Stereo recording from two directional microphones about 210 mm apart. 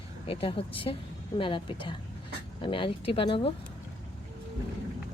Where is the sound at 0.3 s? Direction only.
25° left (ahead or behind).